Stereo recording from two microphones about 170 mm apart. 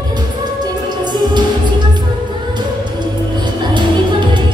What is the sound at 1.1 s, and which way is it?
Music, 25° right (ahead or behind).